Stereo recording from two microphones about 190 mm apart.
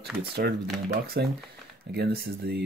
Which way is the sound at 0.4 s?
55° right (ahead or behind).